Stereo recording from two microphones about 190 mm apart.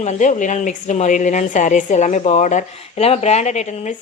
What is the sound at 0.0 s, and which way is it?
A woman's voice, 40° left (ahead or behind).